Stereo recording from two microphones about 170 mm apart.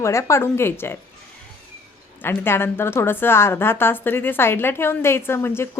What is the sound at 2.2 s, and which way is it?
A woman's voice, 15° left (ahead or behind).